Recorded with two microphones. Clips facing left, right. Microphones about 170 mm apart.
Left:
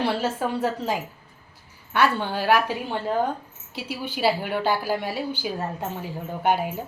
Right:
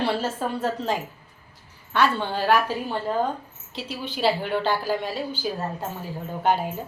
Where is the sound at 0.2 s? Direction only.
10° left (ahead or behind).